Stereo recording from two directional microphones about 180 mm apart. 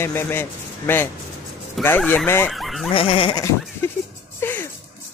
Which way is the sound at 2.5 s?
Centre (ahead or behind).